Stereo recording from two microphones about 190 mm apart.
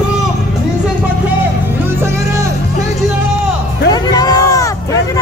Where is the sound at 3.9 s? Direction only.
20° left (ahead or behind).